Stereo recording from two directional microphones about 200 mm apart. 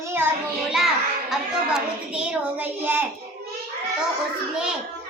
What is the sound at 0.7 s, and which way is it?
A child's voice, centre (ahead or behind).